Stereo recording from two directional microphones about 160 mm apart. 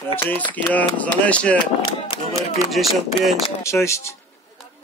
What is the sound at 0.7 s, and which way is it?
Speech, 10° left (ahead or behind).